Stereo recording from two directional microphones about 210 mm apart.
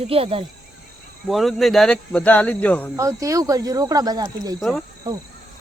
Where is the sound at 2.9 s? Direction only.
15° right (ahead or behind).